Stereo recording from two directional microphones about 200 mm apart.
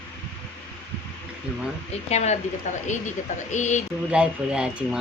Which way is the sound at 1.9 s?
35° left (ahead or behind).